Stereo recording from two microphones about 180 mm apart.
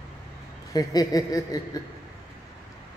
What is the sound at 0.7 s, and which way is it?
Speech, 20° left (ahead or behind).